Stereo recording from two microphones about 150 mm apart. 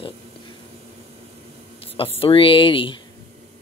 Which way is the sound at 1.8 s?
40° left (ahead or behind).